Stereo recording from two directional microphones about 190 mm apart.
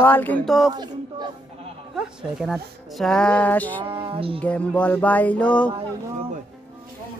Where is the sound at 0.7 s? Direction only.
20° right (ahead or behind).